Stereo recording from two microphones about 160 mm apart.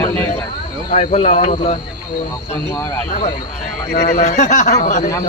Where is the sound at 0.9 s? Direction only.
40° left (ahead or behind).